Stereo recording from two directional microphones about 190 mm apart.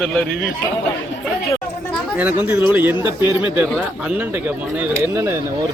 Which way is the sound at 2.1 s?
10° right (ahead or behind).